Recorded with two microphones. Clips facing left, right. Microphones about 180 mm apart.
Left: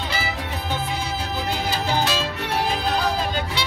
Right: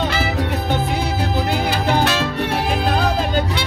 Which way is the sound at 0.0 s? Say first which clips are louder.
Right 7 dB; 70° right (ahead or behind).